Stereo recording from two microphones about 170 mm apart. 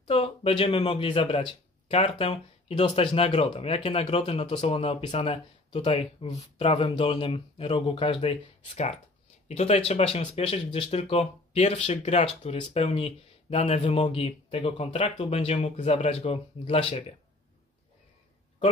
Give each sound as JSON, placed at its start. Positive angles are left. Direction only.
{"t": 0.0, "sound": "speech", "side_deg": 35}